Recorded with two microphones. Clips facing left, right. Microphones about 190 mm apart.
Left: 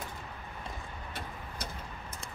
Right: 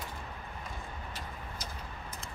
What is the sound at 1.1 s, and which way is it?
Vehicle, 60° left (ahead or behind).